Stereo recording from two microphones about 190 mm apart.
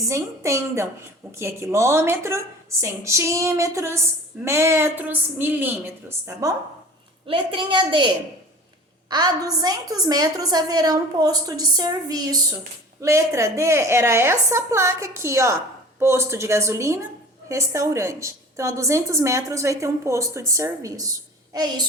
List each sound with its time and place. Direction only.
0.1 s a woman's voice: 15° right (ahead or behind)
7.3 s a woman's voice: 25° right (ahead or behind)